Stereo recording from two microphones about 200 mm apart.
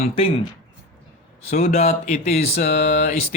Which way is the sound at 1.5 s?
35° left (ahead or behind).